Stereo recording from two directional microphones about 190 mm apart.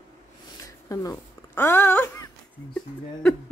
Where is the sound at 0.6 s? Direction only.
15° left (ahead or behind).